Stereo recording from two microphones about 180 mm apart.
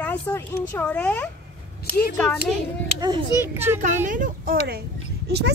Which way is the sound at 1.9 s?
55° left (ahead or behind).